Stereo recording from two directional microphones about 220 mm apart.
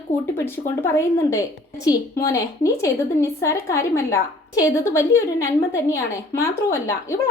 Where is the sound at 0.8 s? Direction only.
10° left (ahead or behind).